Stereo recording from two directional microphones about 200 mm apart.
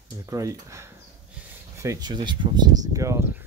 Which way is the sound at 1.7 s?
15° right (ahead or behind).